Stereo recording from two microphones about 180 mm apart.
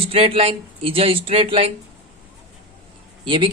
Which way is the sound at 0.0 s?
30° right (ahead or behind).